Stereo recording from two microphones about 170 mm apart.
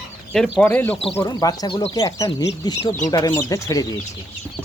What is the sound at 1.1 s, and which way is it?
Speech, 20° left (ahead or behind).